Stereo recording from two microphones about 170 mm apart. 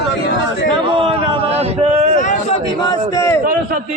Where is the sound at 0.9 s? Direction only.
30° right (ahead or behind).